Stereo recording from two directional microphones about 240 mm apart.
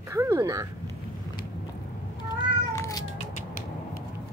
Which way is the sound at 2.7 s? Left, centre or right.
Centre.